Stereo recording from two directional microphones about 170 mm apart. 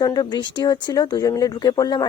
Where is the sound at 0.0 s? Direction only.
25° left (ahead or behind).